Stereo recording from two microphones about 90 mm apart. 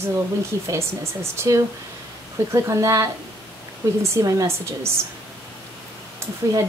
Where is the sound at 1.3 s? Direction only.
30° right (ahead or behind).